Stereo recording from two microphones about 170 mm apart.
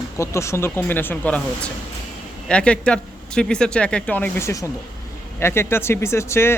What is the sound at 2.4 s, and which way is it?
Speech, 5° left (ahead or behind).